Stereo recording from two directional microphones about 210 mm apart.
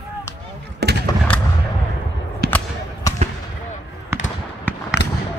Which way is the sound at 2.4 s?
50° right (ahead or behind).